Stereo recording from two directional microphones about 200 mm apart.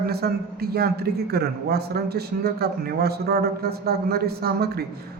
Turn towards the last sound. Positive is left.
turn(degrees=-50)  # may be behind; listen again after turning